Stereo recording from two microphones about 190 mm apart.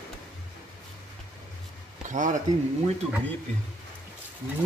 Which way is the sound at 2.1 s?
40° right (ahead or behind).